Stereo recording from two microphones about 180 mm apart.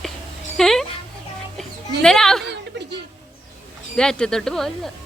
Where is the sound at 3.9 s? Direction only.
5° left (ahead or behind).